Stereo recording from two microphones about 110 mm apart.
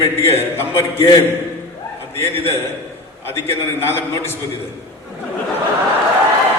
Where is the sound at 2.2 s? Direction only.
25° left (ahead or behind).